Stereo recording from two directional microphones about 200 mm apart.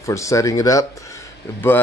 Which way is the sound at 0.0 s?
15° left (ahead or behind).